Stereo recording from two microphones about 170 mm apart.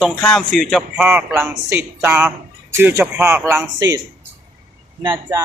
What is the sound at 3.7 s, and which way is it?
Speech, 25° right (ahead or behind).